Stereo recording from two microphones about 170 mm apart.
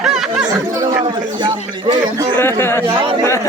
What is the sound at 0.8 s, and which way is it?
Speech, 25° right (ahead or behind).